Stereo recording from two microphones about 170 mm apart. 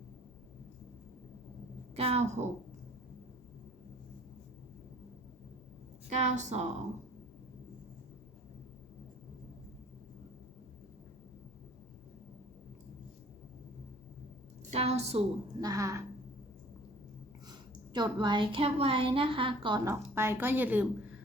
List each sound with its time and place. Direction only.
2.0 s a woman's voice: 40° right (ahead or behind)
6.1 s a woman's voice: 45° right (ahead or behind)
14.7 s a woman's voice: 40° right (ahead or behind)
15.6 s a woman's voice: 20° right (ahead or behind)
17.5 s a woman's voice: 25° right (ahead or behind); by 20.8 s 10° right (ahead or behind)